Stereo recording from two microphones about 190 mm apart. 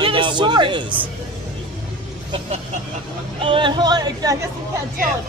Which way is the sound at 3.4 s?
25° right (ahead or behind).